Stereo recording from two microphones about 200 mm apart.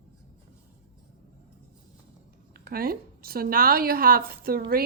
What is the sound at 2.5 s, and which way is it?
Speech, 50° right (ahead or behind).